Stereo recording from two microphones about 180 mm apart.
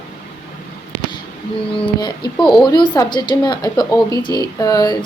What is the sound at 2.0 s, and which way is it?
Speech, 25° left (ahead or behind).